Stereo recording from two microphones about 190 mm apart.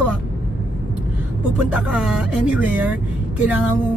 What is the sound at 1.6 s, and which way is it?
Speech, 5° right (ahead or behind).